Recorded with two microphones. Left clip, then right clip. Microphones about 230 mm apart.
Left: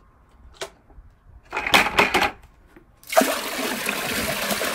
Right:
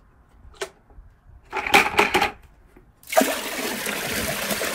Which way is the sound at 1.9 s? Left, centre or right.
Left.